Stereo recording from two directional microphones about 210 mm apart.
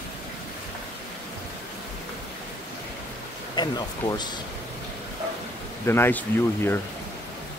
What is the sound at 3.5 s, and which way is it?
Speech, 20° left (ahead or behind).